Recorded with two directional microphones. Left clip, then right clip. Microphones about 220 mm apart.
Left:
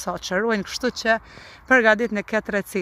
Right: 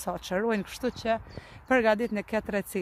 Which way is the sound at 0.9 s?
20° left (ahead or behind).